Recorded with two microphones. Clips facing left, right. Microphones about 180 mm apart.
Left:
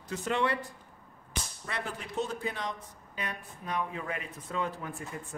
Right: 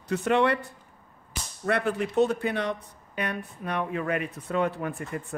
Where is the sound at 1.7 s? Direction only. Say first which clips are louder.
Right 13 dB; 60° right (ahead or behind).